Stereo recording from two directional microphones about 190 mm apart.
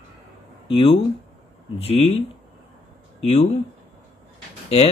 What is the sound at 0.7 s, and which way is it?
Speech, 25° left (ahead or behind).